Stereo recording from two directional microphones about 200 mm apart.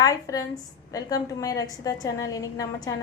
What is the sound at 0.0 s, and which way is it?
A woman's voice, 20° left (ahead or behind).